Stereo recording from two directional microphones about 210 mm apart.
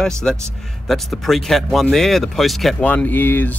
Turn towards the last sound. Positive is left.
turn(degrees=10)  # may be behind; listen again after turning